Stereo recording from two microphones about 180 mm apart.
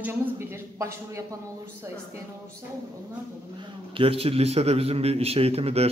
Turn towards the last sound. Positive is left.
turn(degrees=-35)  # may be behind; listen again after turning